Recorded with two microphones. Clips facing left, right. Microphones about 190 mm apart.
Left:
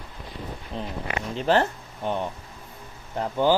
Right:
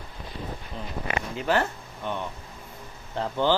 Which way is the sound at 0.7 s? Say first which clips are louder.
Left 7 dB; 30° left (ahead or behind).